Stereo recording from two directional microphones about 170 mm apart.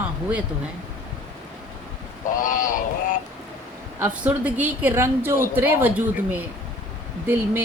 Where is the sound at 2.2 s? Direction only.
50° left (ahead or behind).